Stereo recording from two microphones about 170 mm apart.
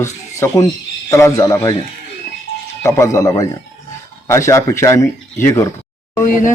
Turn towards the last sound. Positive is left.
turn(degrees=50)  # may be behind; listen again after turning